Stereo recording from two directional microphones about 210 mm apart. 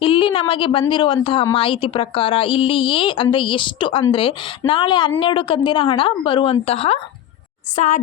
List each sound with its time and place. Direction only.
0.0 s a woman's voice: 25° left (ahead or behind)